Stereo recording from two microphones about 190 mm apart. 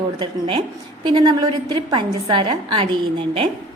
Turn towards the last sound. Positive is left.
turn(degrees=-25)  # may be behind; listen again after turning